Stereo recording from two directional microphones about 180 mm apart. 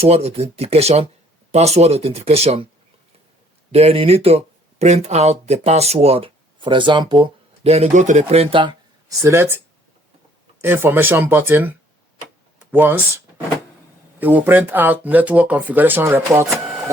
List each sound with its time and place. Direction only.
0.0 s speech: 35° right (ahead or behind)
3.7 s speech: 35° right (ahead or behind)
9.2 s speech: 15° right (ahead or behind)
10.6 s speech: 10° right (ahead or behind)
12.7 s speech: 10° right (ahead or behind)
14.2 s speech: 10° right (ahead or behind)